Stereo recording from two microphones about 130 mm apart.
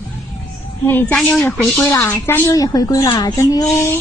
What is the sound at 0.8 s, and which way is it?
Speech, 15° left (ahead or behind).